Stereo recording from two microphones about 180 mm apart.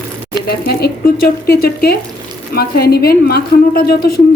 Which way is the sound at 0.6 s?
60° left (ahead or behind).